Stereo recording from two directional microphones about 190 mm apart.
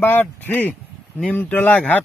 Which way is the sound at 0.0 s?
10° left (ahead or behind).